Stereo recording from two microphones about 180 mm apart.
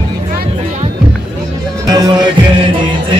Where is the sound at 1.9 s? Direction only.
20° right (ahead or behind).